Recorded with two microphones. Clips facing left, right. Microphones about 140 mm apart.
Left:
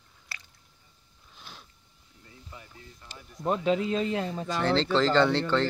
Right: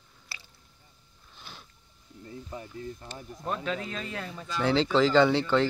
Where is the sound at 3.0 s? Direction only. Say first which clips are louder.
Right 6 dB; 40° right (ahead or behind).